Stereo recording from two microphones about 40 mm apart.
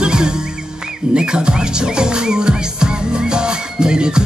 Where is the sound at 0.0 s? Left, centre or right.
Right.